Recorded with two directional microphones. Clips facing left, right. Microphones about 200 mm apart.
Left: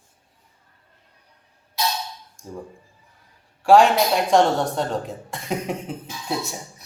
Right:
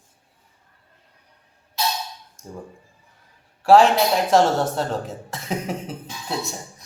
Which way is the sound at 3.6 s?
5° right (ahead or behind).